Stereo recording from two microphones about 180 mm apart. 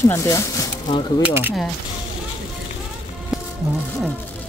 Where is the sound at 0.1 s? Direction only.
15° left (ahead or behind).